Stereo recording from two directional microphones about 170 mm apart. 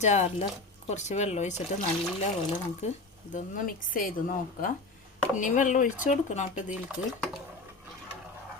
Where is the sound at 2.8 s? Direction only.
40° left (ahead or behind).